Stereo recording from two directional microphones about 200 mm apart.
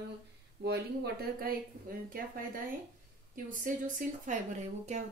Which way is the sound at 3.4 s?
40° right (ahead or behind).